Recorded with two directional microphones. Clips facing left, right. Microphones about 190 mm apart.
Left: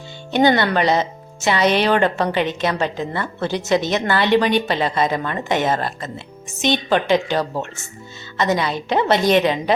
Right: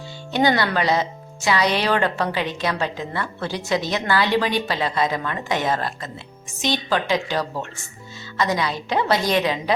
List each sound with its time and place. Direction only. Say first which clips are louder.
0.3 s a woman's voice: left 4 dB; 25° left (ahead or behind)